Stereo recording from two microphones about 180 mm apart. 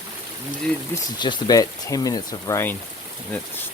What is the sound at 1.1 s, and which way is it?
Speech, 25° left (ahead or behind).